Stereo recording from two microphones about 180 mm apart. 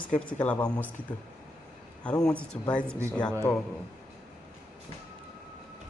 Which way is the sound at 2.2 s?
5° left (ahead or behind).